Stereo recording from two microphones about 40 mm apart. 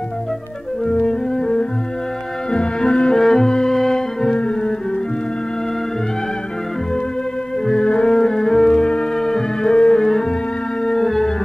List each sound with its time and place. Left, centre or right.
1.0 s music: centre
4.4 s music: left
7.6 s music: centre